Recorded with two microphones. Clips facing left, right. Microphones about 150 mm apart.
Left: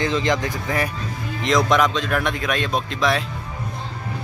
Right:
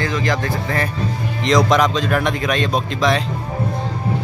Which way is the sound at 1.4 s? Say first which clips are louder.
Right 3 dB; centre (ahead or behind).